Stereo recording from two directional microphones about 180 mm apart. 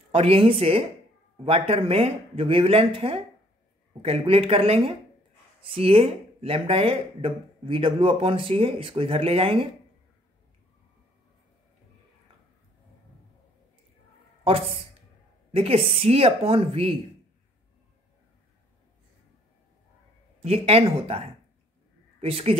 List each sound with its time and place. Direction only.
0.1 s speech: 30° right (ahead or behind)
15.5 s speech: 35° right (ahead or behind)
20.4 s speech: 35° right (ahead or behind)